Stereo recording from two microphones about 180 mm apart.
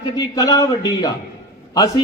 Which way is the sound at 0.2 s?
20° left (ahead or behind).